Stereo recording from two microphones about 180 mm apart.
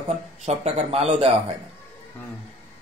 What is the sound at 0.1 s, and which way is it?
A man's voice, 35° right (ahead or behind).